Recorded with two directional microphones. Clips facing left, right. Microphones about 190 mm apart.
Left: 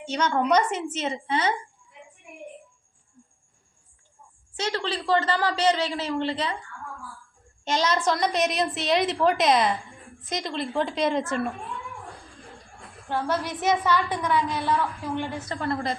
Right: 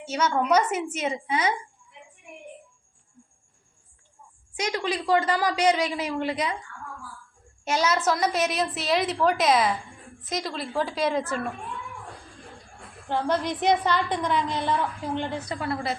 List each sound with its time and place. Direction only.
0.0 s a woman's voice: 5° right (ahead or behind)
4.5 s a woman's voice: 15° right (ahead or behind)
7.6 s a woman's voice: 10° right (ahead or behind)
13.1 s a woman's voice: 15° right (ahead or behind)
15.5 s a woman's voice: 5° right (ahead or behind)